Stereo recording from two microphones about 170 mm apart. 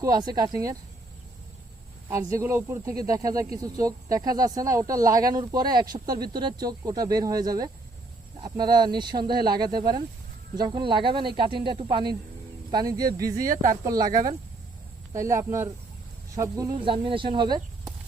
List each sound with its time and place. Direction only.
0.0 s speech: 25° right (ahead or behind)
2.0 s speech: 15° right (ahead or behind)
13.5 s speech: 50° right (ahead or behind)
13.8 s speech: 20° right (ahead or behind)
14.1 s speech: 55° right (ahead or behind)
15.1 s speech: 15° right (ahead or behind)